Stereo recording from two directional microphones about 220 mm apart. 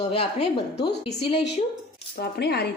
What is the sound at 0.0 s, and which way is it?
Speech, 30° left (ahead or behind).